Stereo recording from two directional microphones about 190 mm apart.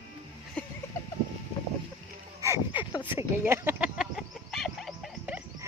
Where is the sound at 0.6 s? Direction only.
5° left (ahead or behind).